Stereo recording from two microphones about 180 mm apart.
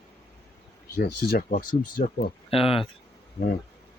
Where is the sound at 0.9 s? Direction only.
60° left (ahead or behind).